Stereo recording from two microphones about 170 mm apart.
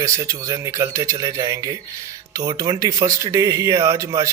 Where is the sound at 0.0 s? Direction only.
20° right (ahead or behind).